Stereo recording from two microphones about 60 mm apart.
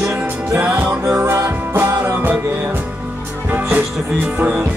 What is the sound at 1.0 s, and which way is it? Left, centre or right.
Music, right.